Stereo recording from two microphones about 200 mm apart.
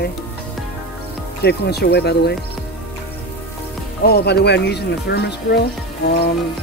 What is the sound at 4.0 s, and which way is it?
Speech, 55° left (ahead or behind).